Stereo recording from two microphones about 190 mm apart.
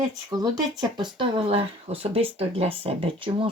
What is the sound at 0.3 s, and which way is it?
Speech, 20° right (ahead or behind).